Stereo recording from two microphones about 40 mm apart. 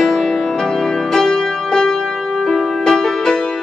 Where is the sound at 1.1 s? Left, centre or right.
Centre.